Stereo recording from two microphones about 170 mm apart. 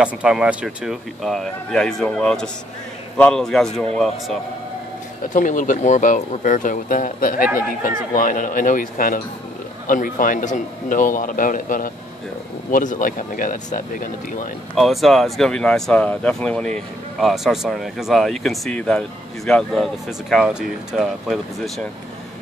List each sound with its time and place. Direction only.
0.0 s speech: 5° right (ahead or behind)
5.3 s speech: 50° left (ahead or behind)
14.8 s speech: centre (ahead or behind)